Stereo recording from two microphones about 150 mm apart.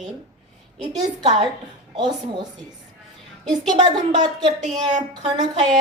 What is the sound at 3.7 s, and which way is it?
A woman's voice, 55° right (ahead or behind).